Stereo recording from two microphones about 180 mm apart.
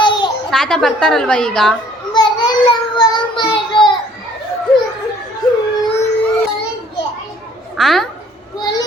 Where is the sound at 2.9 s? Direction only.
25° left (ahead or behind).